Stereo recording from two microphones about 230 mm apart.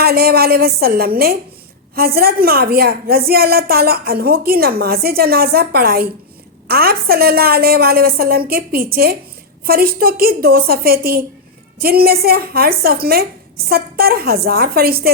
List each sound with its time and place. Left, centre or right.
0.0 s a woman's voice: right